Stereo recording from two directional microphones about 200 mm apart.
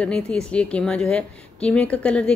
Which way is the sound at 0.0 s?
5° left (ahead or behind).